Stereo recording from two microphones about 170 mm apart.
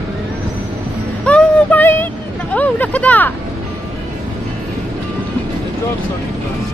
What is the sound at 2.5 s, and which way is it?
Speech, 10° left (ahead or behind).